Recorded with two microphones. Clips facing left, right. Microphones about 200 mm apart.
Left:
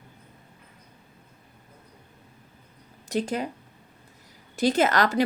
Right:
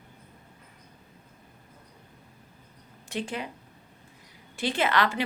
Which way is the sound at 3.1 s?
40° left (ahead or behind).